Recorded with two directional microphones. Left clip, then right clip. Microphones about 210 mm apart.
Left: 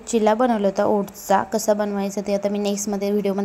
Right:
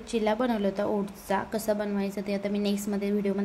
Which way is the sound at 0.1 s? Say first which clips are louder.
Left 9 dB; 20° left (ahead or behind).